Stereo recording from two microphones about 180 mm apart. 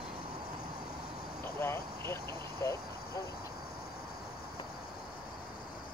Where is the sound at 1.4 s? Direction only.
15° left (ahead or behind).